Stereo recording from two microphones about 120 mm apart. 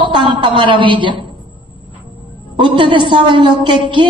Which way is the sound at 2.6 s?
40° right (ahead or behind).